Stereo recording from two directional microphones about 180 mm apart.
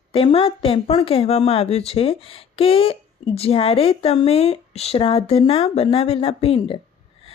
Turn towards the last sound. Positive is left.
turn(degrees=30)  # may be behind; listen again after turning